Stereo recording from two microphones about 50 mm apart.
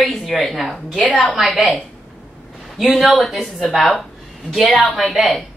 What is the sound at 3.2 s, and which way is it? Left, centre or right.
Speech, centre.